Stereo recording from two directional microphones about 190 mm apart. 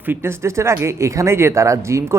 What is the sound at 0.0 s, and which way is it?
Speech, 10° right (ahead or behind).